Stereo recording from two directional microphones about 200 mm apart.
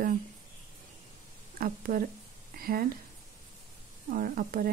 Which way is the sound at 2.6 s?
45° right (ahead or behind).